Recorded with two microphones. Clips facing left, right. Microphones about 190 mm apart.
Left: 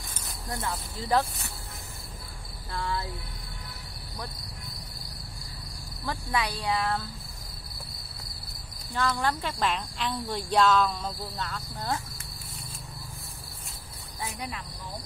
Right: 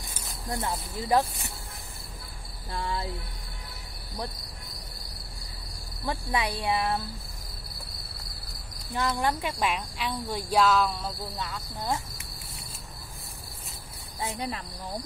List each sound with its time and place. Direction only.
0.7 s speech: 10° right (ahead or behind)
2.7 s speech: 20° right (ahead or behind)
6.0 s speech: 20° right (ahead or behind)
8.9 s speech: 20° right (ahead or behind)
14.2 s cricket: 30° right (ahead or behind)